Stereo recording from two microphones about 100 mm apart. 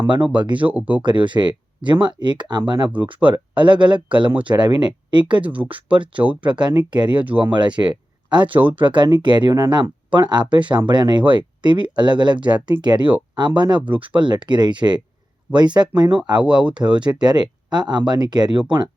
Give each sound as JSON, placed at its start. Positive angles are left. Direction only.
{"t": 0.5, "sound": "speech", "side_deg": -15}
{"t": 1.0, "sound": "speech", "side_deg": -50}
{"t": 4.3, "sound": "speech", "side_deg": -15}
{"t": 4.5, "sound": "speech", "side_deg": -50}
{"t": 5.5, "sound": "speech", "side_deg": -15}
{"t": 6.5, "sound": "speech", "side_deg": -50}
{"t": 7.2, "sound": "speech", "side_deg": -15}
{"t": 7.5, "sound": "speech", "side_deg": -50}